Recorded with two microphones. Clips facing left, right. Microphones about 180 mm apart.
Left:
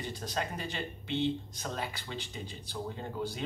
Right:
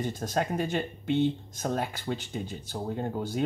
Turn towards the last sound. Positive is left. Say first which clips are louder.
# right 6 dB
turn(degrees=-45)  # may be behind; listen again after turning